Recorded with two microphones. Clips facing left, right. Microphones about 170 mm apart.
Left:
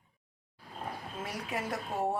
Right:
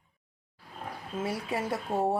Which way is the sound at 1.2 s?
25° right (ahead or behind).